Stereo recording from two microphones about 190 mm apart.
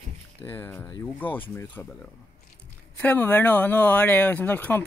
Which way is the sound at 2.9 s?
10° left (ahead or behind).